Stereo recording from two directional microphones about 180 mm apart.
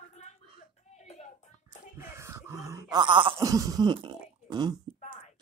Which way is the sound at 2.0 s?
15° right (ahead or behind).